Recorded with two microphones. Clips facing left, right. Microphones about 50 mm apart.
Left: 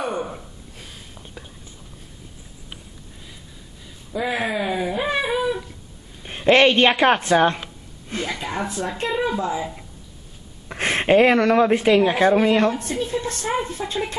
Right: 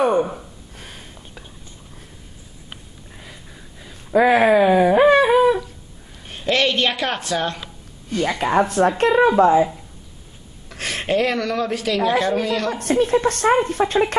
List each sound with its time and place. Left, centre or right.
1.1 s whispering: centre
4.1 s speech: right
5.1 s a sound: right
6.2 s speech: left
8.3 s speech: right
10.7 s speech: left
12.8 s speech: right